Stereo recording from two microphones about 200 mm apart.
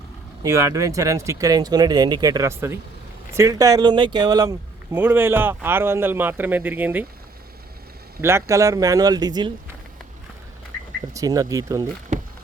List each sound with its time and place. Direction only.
0.4 s speech: 15° right (ahead or behind)
8.2 s speech: 15° right (ahead or behind)
11.1 s speech: 15° right (ahead or behind)